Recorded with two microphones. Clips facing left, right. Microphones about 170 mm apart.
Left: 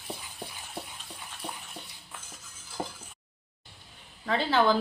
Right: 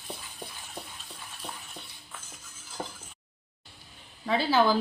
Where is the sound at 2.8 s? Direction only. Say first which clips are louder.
Left 2 dB; 20° left (ahead or behind).